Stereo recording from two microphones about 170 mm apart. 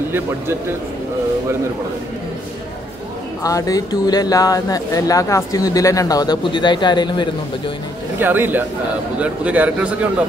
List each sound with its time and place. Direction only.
3.4 s speech: 20° left (ahead or behind)
8.2 s a man's voice: 10° right (ahead or behind)